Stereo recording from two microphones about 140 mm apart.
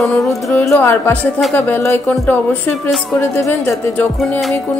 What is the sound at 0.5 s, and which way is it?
Music, 20° left (ahead or behind).